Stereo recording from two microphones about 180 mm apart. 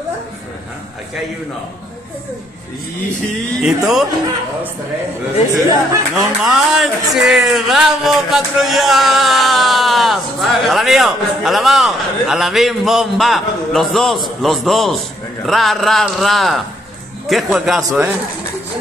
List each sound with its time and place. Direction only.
3.6 s speech: centre (ahead or behind)
5.5 s speech: 15° right (ahead or behind)
6.4 s speech: centre (ahead or behind)